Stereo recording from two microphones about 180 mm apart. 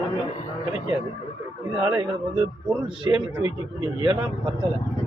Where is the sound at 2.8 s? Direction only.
25° right (ahead or behind).